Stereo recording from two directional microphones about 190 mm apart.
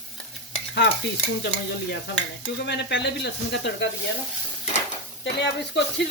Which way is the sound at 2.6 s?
65° left (ahead or behind).